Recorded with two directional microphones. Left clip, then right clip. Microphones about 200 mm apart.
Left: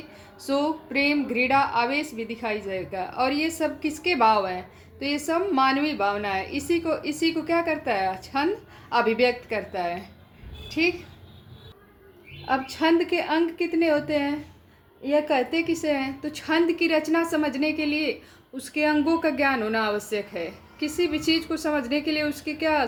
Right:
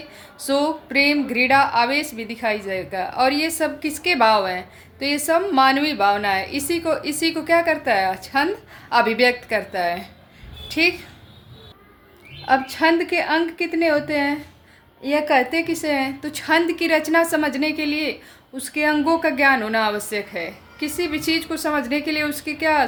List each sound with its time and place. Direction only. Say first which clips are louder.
0.3 s a woman's voice: right 5 dB; 15° right (ahead or behind)
12.5 s a woman's voice: right 5 dB; 15° right (ahead or behind)